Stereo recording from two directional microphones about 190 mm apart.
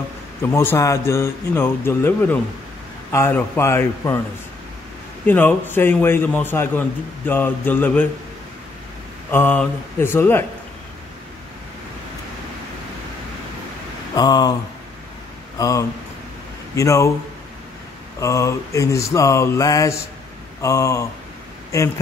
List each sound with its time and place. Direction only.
0.4 s speech: 15° left (ahead or behind)
5.2 s speech: 10° left (ahead or behind)
9.3 s speech: 10° left (ahead or behind)
14.1 s speech: 20° left (ahead or behind)
15.5 s speech: 20° left (ahead or behind)
18.2 s speech: 15° left (ahead or behind)